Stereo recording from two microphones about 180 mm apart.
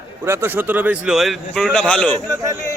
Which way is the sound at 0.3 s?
15° right (ahead or behind).